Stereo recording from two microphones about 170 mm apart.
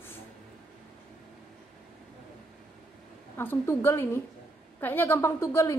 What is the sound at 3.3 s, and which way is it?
A woman's voice, 10° left (ahead or behind).